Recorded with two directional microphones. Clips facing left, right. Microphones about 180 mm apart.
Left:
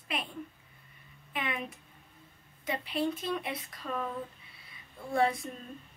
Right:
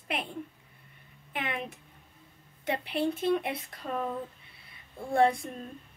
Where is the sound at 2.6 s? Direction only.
60° right (ahead or behind).